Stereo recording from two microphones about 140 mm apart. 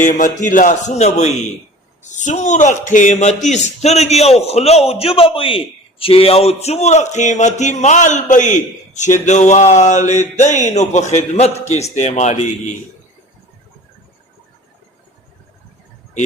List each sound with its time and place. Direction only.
0.0 s a man's voice: 70° left (ahead or behind)